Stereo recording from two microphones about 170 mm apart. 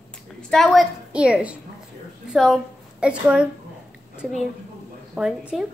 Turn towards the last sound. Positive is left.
turn(degrees=-5)  # may be behind; listen again after turning